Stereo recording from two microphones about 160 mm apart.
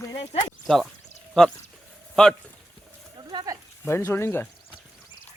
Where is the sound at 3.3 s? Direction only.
25° right (ahead or behind).